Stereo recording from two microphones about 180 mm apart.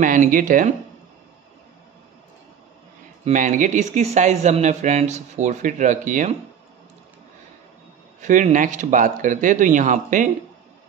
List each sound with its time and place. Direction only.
0.0 s speech: 45° right (ahead or behind)
3.3 s speech: 45° right (ahead or behind)
8.2 s speech: 45° right (ahead or behind)